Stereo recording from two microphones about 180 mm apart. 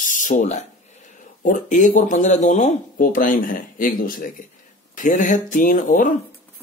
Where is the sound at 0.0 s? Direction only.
50° left (ahead or behind).